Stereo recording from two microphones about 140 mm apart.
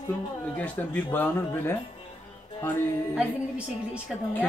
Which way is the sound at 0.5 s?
10° left (ahead or behind).